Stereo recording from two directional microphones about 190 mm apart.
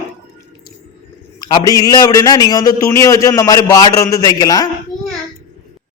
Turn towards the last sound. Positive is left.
turn(degrees=20)  # may be behind; listen again after turning